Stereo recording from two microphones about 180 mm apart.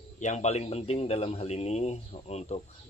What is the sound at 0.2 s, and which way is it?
Speech, 40° left (ahead or behind).